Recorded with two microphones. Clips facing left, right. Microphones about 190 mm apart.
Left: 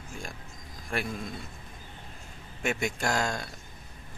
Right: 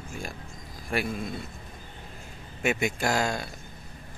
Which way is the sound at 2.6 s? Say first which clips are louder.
Right 3 dB; 5° right (ahead or behind).